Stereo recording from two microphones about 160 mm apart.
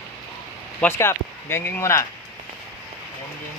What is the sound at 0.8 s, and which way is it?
Speech, 15° left (ahead or behind).